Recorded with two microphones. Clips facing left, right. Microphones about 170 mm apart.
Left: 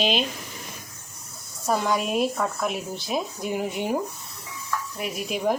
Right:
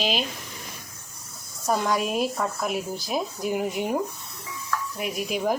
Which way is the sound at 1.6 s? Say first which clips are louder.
Even; centre (ahead or behind).